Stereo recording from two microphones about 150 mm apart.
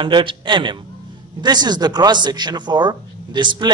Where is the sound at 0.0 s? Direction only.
35° right (ahead or behind).